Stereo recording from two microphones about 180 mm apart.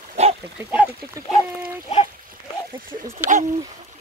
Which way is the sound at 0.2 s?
40° right (ahead or behind).